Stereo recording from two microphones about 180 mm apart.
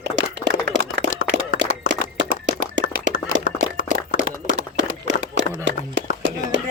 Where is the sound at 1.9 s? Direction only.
90° right.